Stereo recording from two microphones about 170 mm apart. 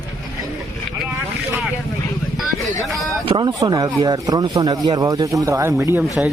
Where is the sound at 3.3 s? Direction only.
25° right (ahead or behind).